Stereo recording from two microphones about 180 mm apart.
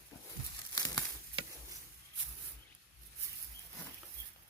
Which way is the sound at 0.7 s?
20° left (ahead or behind).